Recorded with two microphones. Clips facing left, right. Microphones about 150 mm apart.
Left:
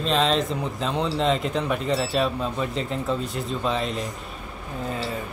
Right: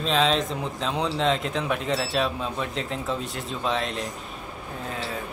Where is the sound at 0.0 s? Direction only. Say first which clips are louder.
Left 1 dB; centre (ahead or behind).